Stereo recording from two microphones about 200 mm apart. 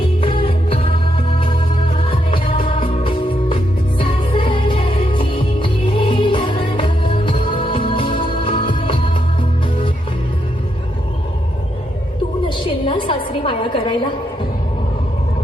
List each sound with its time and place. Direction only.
0.2 s music: 25° left (ahead or behind)
2.0 s music: 25° left (ahead or behind)
12.5 s a sound: 25° left (ahead or behind)